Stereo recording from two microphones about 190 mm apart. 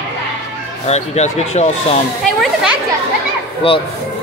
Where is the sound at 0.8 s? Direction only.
35° left (ahead or behind).